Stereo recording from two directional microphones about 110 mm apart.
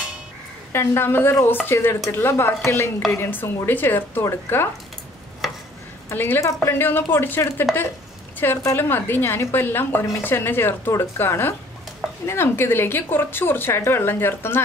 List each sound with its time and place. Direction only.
0.7 s a woman's voice: 20° left (ahead or behind)
6.0 s a woman's voice: 20° left (ahead or behind)